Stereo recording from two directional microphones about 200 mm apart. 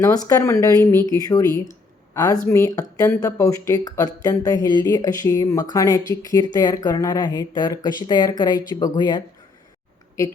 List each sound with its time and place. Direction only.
0.3 s speech: 15° left (ahead or behind)